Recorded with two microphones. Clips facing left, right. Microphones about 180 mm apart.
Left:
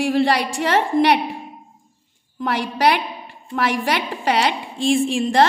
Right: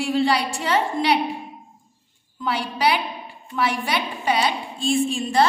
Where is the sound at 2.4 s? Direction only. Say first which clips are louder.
Left 3 dB; 90° left.